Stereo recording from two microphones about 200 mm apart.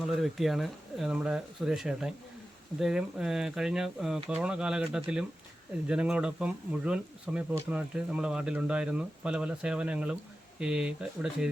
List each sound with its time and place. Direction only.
0.2 s speech: centre (ahead or behind)